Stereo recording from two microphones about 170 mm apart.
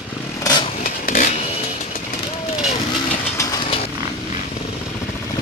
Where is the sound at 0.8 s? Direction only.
50° left (ahead or behind).